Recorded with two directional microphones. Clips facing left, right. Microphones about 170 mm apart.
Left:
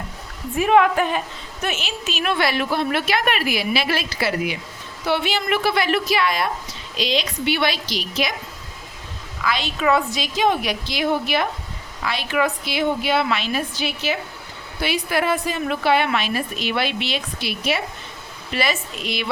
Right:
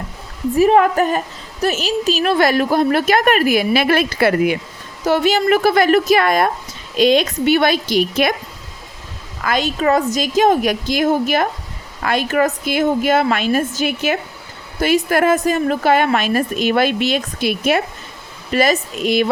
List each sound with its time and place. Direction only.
0.5 s a woman's voice: 40° right (ahead or behind); by 4.5 s 55° right (ahead or behind)
5.0 s a woman's voice: 45° right (ahead or behind)
9.4 s a woman's voice: 45° right (ahead or behind)